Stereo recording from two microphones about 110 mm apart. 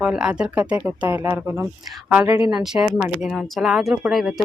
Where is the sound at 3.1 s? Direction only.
Centre (ahead or behind).